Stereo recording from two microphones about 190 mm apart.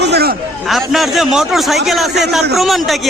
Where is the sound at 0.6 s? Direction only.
Centre (ahead or behind).